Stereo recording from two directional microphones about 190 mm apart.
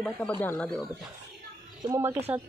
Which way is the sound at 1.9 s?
10° right (ahead or behind).